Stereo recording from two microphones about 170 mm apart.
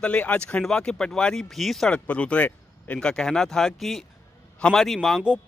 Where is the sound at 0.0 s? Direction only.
10° left (ahead or behind).